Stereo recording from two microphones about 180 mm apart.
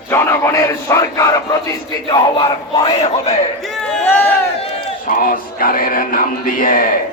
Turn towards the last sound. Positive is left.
turn(degrees=50)  # may be behind; listen again after turning